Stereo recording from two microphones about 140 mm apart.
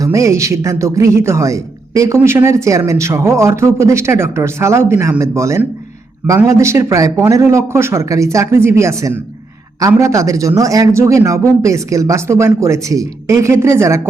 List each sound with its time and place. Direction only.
0.0 s speech: 20° right (ahead or behind)